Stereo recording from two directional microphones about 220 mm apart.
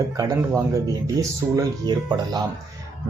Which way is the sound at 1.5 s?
20° right (ahead or behind).